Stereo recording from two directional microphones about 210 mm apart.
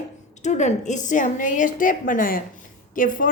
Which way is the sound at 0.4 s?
35° left (ahead or behind).